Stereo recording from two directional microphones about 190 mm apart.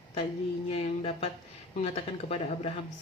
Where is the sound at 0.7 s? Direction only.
30° left (ahead or behind).